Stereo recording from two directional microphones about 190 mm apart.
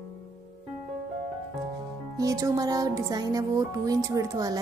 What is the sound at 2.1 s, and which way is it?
Speech, 15° right (ahead or behind).